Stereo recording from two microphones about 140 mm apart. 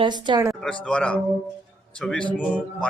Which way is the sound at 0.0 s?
30° right (ahead or behind).